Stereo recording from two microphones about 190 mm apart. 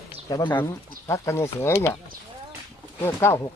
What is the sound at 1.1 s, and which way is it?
Speech, 15° left (ahead or behind).